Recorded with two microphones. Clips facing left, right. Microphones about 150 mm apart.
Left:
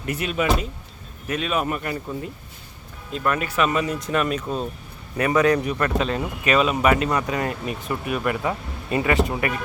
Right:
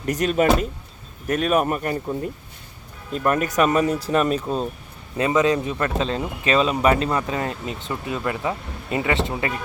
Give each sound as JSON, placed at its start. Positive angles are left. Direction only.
{"t": 0.0, "sound": "speech", "side_deg": -40}
{"t": 3.1, "sound": "speech", "side_deg": -45}
{"t": 4.4, "sound": "speech", "side_deg": 0}
{"t": 5.1, "sound": "speech", "side_deg": -20}